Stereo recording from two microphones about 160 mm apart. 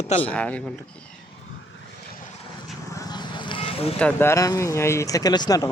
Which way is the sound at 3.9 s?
10° left (ahead or behind).